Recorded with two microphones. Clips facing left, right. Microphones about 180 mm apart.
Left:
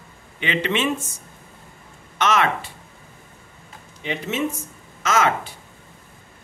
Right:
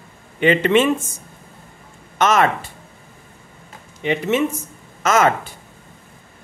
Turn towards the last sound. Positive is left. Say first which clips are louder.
# right 4 dB
turn(degrees=-50)  # may be behind; listen again after turning